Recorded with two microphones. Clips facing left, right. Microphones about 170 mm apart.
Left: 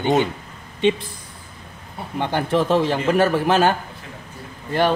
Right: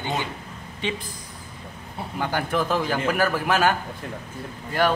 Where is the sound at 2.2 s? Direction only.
25° left (ahead or behind).